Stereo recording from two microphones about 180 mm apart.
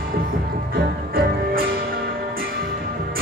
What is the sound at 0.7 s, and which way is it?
Music, 55° right (ahead or behind).